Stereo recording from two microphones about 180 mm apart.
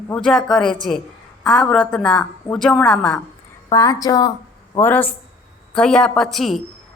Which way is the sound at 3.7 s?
20° left (ahead or behind).